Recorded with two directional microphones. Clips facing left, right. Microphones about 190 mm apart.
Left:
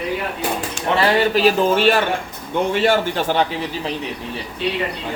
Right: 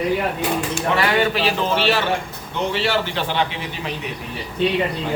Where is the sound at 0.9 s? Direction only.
40° left (ahead or behind).